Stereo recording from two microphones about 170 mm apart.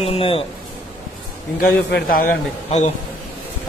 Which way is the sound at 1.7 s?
60° left (ahead or behind).